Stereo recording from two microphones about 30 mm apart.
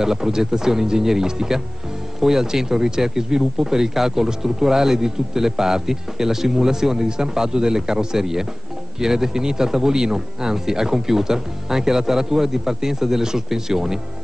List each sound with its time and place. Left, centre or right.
0.0 s speech: centre